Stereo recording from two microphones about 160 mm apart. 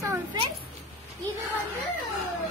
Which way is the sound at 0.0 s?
20° right (ahead or behind).